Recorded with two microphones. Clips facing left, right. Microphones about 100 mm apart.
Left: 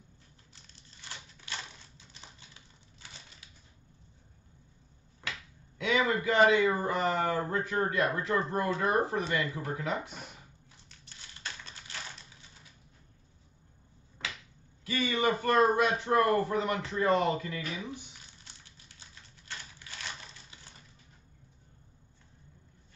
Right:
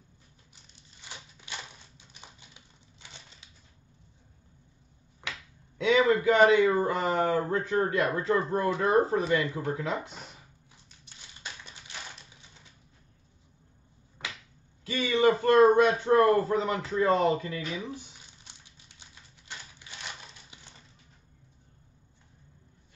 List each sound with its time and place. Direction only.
0.5 s a sound: 15° right (ahead or behind)
2.5 s typewriter: 25° right (ahead or behind)
5.9 s a man's voice: 25° right (ahead or behind)
11.4 s a sound: 15° right (ahead or behind)
14.9 s a man's voice: 25° right (ahead or behind)
18.4 s typewriter: 20° right (ahead or behind)